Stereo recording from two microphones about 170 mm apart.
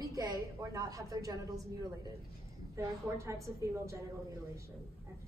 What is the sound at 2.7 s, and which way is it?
A woman's voice, 15° right (ahead or behind).